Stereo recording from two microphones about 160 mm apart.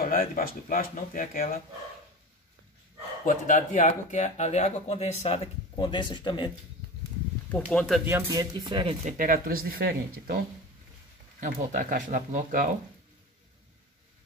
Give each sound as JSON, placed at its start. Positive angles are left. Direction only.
{"t": 0.0, "sound": "speech", "side_deg": 65}
{"t": 3.3, "sound": "speech", "side_deg": 55}
{"t": 7.5, "sound": "speech", "side_deg": 5}
{"t": 8.0, "sound": "speech", "side_deg": -15}
{"t": 9.0, "sound": "speech", "side_deg": -55}
{"t": 11.3, "sound": "speech", "side_deg": -55}